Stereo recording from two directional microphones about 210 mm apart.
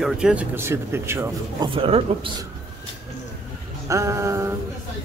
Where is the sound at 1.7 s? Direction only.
25° right (ahead or behind).